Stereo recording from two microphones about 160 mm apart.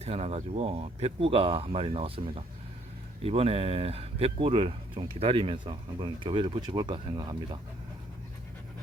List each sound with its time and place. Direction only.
0.0 s speech: 40° right (ahead or behind)